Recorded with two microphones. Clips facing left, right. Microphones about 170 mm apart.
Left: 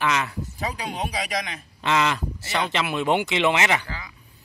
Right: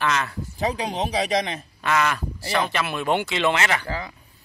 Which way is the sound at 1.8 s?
20° left (ahead or behind).